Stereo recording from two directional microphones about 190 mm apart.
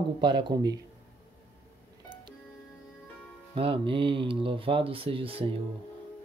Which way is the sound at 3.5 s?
30° right (ahead or behind).